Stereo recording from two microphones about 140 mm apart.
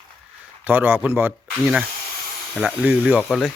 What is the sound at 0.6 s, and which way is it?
Speech, 15° right (ahead or behind).